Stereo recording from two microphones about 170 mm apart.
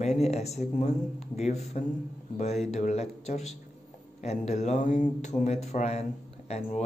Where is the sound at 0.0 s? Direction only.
40° left (ahead or behind).